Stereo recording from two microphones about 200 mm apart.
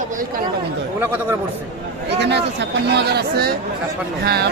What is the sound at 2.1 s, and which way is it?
Speech, 60° right (ahead or behind).